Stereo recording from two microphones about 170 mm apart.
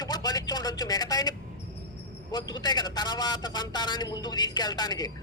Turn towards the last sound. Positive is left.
turn(degrees=25)  # may be behind; listen again after turning